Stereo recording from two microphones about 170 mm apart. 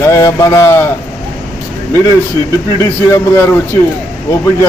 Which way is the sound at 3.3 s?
15° left (ahead or behind).